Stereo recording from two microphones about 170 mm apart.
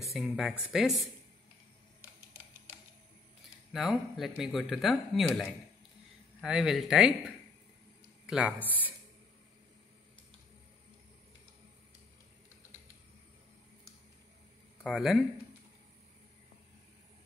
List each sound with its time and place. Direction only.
0.1 s speech: centre (ahead or behind)
3.7 s speech: centre (ahead or behind)
8.3 s speech: 5° right (ahead or behind)
14.8 s speech: centre (ahead or behind)